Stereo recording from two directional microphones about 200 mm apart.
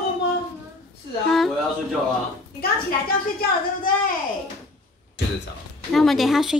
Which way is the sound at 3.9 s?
45° left (ahead or behind).